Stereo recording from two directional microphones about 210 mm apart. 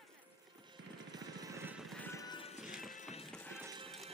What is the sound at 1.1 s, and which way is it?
Music, 15° right (ahead or behind).